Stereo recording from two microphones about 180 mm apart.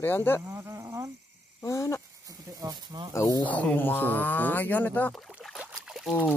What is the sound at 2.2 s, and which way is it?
Speech, 20° right (ahead or behind).